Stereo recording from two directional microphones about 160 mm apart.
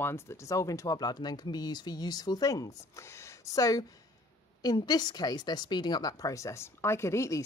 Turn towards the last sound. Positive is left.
turn(degrees=15)  # may be behind; listen again after turning